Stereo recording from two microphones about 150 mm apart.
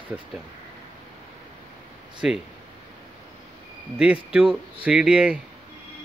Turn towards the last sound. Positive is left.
turn(degrees=-5)  # may be behind; listen again after turning